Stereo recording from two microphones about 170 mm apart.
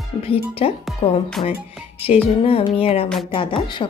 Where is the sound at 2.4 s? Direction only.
35° left (ahead or behind).